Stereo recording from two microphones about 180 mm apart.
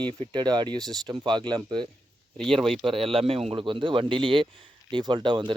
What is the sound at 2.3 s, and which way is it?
Speech, 5° left (ahead or behind).